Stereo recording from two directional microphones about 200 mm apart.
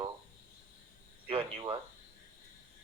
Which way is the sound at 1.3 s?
25° right (ahead or behind).